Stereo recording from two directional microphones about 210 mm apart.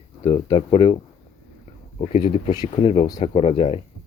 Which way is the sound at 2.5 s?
20° left (ahead or behind).